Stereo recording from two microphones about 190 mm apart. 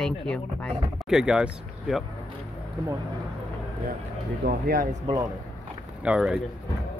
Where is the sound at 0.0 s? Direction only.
5° left (ahead or behind).